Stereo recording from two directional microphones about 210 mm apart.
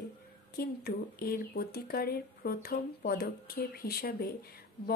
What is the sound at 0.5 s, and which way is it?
Speech, 45° left (ahead or behind).